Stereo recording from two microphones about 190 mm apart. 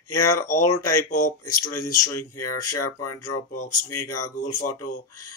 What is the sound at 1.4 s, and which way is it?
Speech, 20° left (ahead or behind).